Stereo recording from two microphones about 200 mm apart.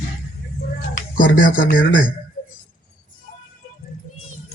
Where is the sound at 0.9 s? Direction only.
40° left (ahead or behind).